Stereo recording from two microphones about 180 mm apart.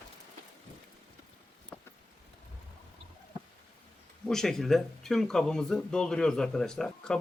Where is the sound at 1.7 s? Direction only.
5° left (ahead or behind).